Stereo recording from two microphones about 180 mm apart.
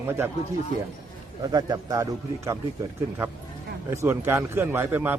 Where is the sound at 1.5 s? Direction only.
20° right (ahead or behind).